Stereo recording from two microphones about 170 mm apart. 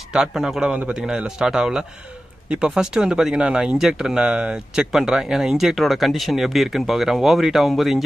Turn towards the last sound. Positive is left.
turn(degrees=0)  # may be behind; listen again after turning